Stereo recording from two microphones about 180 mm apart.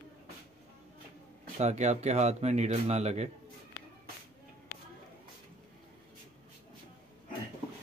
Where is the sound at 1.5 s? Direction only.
40° right (ahead or behind).